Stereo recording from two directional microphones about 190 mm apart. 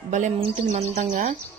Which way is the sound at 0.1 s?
40° right (ahead or behind).